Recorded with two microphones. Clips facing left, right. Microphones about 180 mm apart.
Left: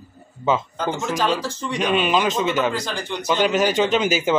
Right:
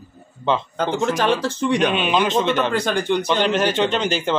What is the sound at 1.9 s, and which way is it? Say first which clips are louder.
Speech: even; centre (ahead or behind).